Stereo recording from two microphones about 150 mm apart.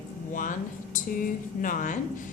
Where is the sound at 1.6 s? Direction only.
60° left (ahead or behind).